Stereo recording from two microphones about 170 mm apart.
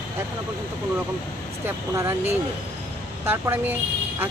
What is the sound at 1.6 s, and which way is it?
Speech, 15° right (ahead or behind).